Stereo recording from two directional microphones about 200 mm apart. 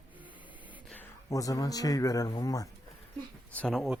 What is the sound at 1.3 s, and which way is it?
Speech, 15° left (ahead or behind).